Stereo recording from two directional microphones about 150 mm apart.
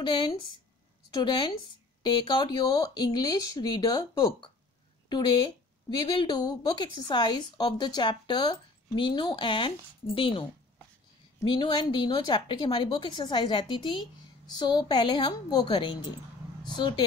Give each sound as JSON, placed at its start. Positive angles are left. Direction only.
{"t": 0.0, "sound": "speech", "side_deg": 30}
{"t": 11.4, "sound": "speech", "side_deg": 35}